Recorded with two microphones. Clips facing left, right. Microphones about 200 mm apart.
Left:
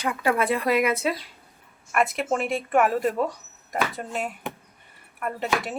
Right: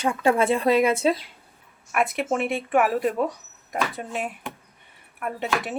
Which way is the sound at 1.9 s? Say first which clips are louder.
Even; centre (ahead or behind).